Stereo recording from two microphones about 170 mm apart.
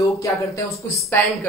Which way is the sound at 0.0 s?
20° left (ahead or behind).